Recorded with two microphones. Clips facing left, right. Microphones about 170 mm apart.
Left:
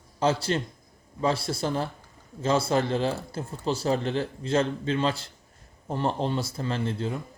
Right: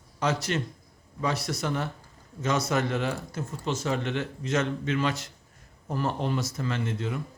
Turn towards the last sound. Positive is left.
turn(degrees=30)  # may be behind; listen again after turning